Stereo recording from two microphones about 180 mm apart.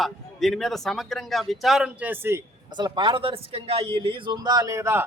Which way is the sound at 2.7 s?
25° right (ahead or behind).